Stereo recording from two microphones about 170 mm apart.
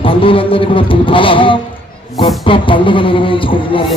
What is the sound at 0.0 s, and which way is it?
Music, 30° left (ahead or behind).